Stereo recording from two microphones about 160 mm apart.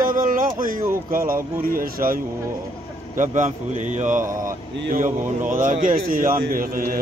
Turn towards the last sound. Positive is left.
turn(degrees=-65)  # may be behind; listen again after turning